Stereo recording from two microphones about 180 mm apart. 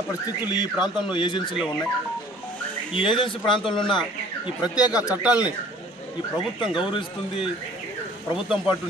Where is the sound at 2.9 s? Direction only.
30° left (ahead or behind).